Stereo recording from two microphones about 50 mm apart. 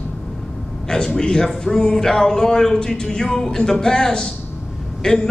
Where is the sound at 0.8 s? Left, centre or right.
Centre.